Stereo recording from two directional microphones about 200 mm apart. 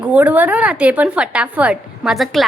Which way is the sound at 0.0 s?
5° right (ahead or behind).